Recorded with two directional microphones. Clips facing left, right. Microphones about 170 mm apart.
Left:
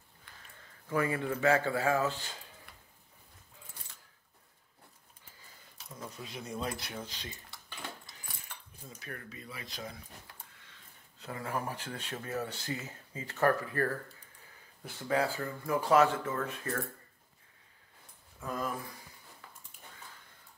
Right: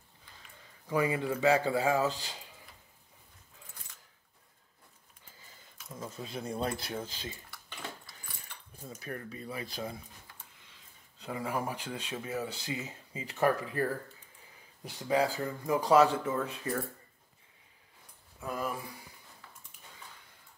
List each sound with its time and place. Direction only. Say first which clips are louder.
0.6 s speech: right 2 dB; 15° right (ahead or behind)
5.9 s speech: right 4 dB; 30° right (ahead or behind)
9.0 s speech: right 5 dB; 35° right (ahead or behind)
11.2 s speech: right 2 dB; 15° right (ahead or behind)
18.4 s speech: right 1 dB; 10° right (ahead or behind)